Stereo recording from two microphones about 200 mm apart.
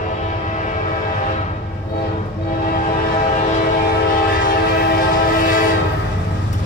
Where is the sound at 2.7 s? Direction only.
40° left (ahead or behind).